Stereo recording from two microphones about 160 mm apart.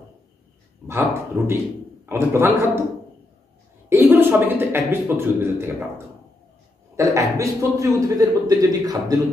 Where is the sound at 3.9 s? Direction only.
15° right (ahead or behind).